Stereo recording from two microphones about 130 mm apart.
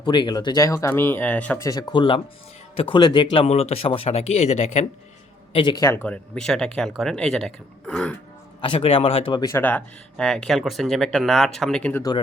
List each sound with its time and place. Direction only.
0.0 s speech: 35° left (ahead or behind); by 1.5 s 10° left (ahead or behind)
1.5 s speech: 25° left (ahead or behind)
3.4 s speech: 55° left (ahead or behind)
5.5 s speech: 35° left (ahead or behind)
5.9 s speech: 10° left (ahead or behind)
8.6 s speech: 45° left (ahead or behind)
9.4 s speech: 25° left (ahead or behind)
9.6 s speech: 10° left (ahead or behind)